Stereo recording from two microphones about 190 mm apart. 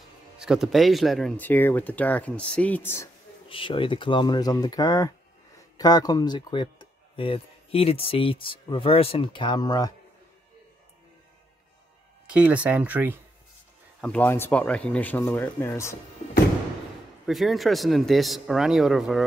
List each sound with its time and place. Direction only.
0.4 s speech: centre (ahead or behind)
3.4 s speech: 25° left (ahead or behind)
12.3 s speech: 5° right (ahead or behind)
14.0 s speech: 10° left (ahead or behind)
17.3 s speech: centre (ahead or behind)